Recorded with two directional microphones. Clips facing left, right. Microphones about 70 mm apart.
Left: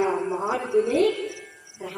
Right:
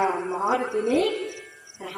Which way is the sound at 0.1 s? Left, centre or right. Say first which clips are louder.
Right 1 dB; centre.